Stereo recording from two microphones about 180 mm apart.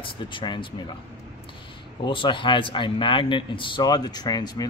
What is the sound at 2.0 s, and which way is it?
A man's voice, 25° left (ahead or behind).